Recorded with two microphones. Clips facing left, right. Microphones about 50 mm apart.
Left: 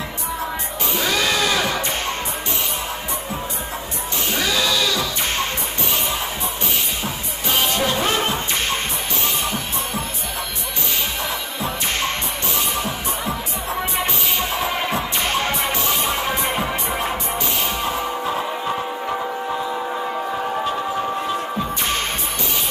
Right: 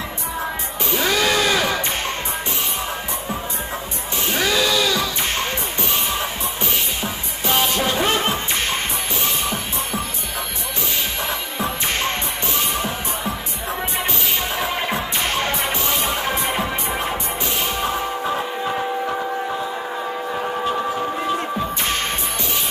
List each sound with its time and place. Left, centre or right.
1.2 s music: centre
7.4 s music: right
12.5 s music: right